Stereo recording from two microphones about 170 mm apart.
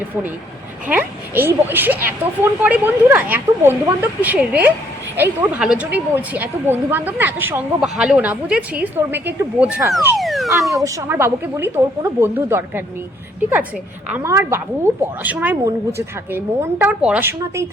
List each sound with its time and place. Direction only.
0.9 s speech: 10° right (ahead or behind)
10.2 s a sound: centre (ahead or behind)
10.7 s speech: 20° right (ahead or behind)
14.1 s speech: 15° right (ahead or behind)